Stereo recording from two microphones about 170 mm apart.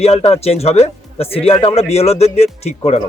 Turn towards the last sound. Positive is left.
turn(degrees=35)  # may be behind; listen again after turning